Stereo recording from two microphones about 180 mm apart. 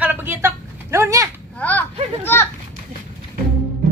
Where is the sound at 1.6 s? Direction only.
10° left (ahead or behind).